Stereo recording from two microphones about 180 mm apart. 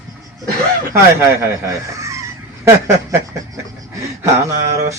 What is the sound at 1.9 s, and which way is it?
Fowl, 15° right (ahead or behind).